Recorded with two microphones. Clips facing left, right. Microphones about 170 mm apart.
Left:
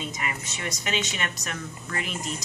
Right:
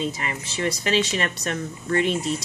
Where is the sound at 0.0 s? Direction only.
30° right (ahead or behind).